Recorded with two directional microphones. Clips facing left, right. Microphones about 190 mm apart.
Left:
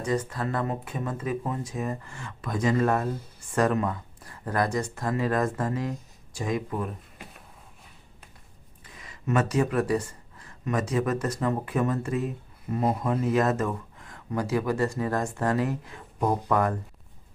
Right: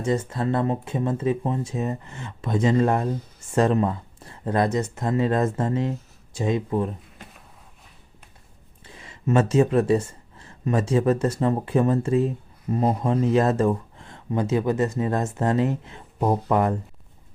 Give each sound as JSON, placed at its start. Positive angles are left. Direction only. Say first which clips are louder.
{"t": 0.0, "sound": "speech", "louder": "right 4 dB", "side_deg": -25}
{"t": 8.9, "sound": "speech", "louder": "right 5 dB", "side_deg": -25}